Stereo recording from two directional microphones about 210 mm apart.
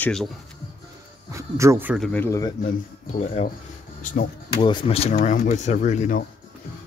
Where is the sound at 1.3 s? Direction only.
15° right (ahead or behind).